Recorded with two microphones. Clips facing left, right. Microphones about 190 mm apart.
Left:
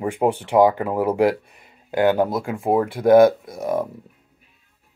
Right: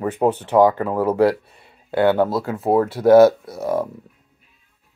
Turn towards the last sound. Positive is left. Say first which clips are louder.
# right 1 dB
turn(degrees=15)  # may be behind; listen again after turning